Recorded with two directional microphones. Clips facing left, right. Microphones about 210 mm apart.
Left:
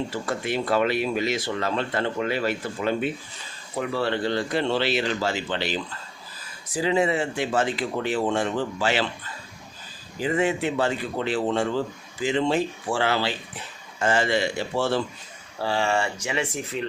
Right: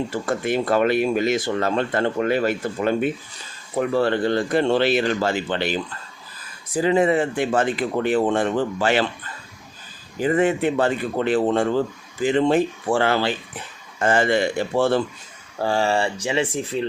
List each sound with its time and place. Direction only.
0.1 s speech: 50° right (ahead or behind)
10.2 s speech: 50° right (ahead or behind)
15.6 s speech: 40° right (ahead or behind)